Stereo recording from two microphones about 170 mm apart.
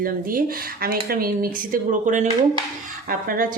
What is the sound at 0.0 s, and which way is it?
Speech, 55° right (ahead or behind).